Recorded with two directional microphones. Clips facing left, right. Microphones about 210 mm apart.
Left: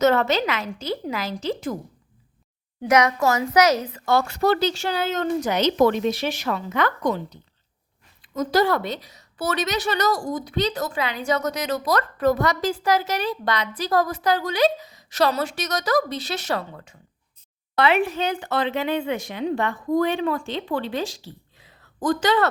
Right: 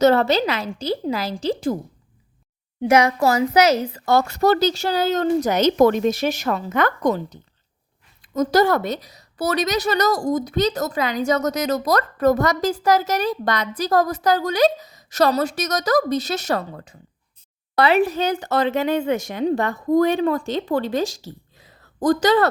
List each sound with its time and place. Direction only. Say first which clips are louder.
0.0 s a woman's voice: right 3 dB; 35° right (ahead or behind)
2.8 s a woman's voice: right 3 dB; 30° right (ahead or behind)